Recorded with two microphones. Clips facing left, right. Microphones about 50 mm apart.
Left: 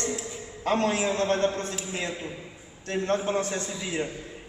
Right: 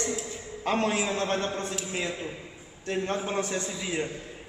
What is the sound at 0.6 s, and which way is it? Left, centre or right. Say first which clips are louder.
A man's voice: left 2 dB; centre.